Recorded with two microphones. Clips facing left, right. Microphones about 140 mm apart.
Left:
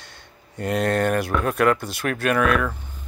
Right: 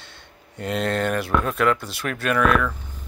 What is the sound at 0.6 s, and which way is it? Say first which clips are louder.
Speech: left 2 dB; 45° left (ahead or behind).